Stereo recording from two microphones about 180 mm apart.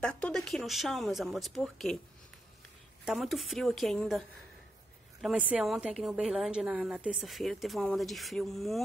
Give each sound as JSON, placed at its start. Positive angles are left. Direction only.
{"t": 0.0, "sound": "a woman's voice", "side_deg": 5}
{"t": 3.1, "sound": "a woman's voice", "side_deg": 0}
{"t": 5.2, "sound": "a woman's voice", "side_deg": -5}